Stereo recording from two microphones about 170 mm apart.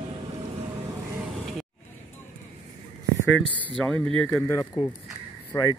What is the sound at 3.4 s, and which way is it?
Speech, 5° left (ahead or behind).